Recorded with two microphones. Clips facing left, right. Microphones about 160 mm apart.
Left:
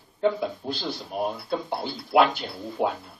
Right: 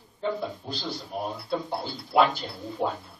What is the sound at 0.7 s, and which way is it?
Speech, 65° left (ahead or behind).